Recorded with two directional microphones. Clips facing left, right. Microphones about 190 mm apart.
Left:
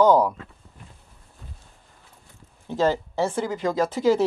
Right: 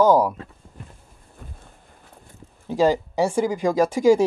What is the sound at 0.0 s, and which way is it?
Speech, 10° right (ahead or behind).